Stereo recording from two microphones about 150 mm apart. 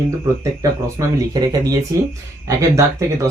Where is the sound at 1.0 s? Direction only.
25° right (ahead or behind).